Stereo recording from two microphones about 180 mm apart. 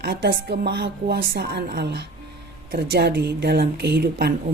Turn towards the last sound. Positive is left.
turn(degrees=-65)  # may be behind; listen again after turning